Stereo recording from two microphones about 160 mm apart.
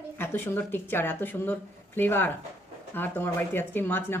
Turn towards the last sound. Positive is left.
turn(degrees=15)  # may be behind; listen again after turning